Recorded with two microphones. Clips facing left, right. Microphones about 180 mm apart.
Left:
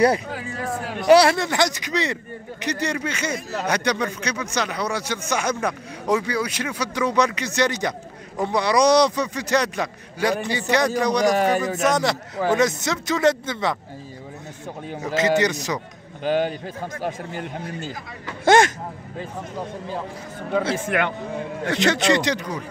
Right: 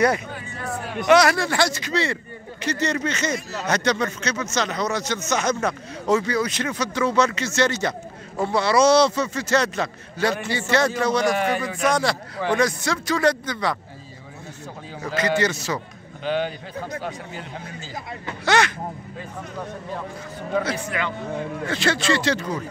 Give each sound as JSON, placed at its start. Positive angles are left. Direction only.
{"t": 0.3, "sound": "speech", "side_deg": 90}
{"t": 1.0, "sound": "speech", "side_deg": 30}
{"t": 11.2, "sound": "a man's voice", "side_deg": 40}
{"t": 11.9, "sound": "speech", "side_deg": 20}
{"t": 15.1, "sound": "speech", "side_deg": 20}
{"t": 16.3, "sound": "a man's voice", "side_deg": 45}
{"t": 20.7, "sound": "a man's voice", "side_deg": 55}
{"t": 21.7, "sound": "speech", "side_deg": 20}